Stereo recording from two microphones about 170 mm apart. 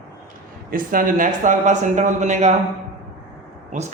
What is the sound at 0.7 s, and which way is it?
Speech, 55° right (ahead or behind).